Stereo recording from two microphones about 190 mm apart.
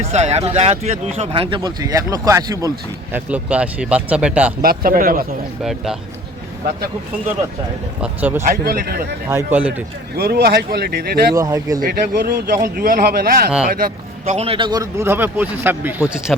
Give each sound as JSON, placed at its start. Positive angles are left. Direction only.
{"t": 0.1, "sound": "speech", "side_deg": -35}
{"t": 4.6, "sound": "speech", "side_deg": -50}
{"t": 5.6, "sound": "speech", "side_deg": 0}
{"t": 8.0, "sound": "speech", "side_deg": -10}
{"t": 8.4, "sound": "speech", "side_deg": -50}
{"t": 9.3, "sound": "speech", "side_deg": -10}
{"t": 10.2, "sound": "speech", "side_deg": -55}
{"t": 11.3, "sound": "speech", "side_deg": -20}
{"t": 11.8, "sound": "speech", "side_deg": -55}
{"t": 14.3, "sound": "speech", "side_deg": -35}